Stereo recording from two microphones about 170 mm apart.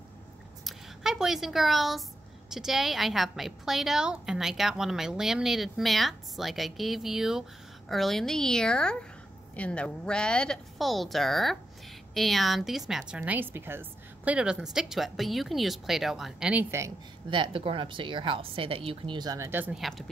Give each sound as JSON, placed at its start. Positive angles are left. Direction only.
{"t": 0.7, "sound": "a woman's voice", "side_deg": -5}
{"t": 17.3, "sound": "a woman's voice", "side_deg": -30}